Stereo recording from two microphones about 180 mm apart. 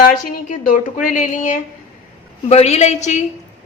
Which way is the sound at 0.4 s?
50° left (ahead or behind).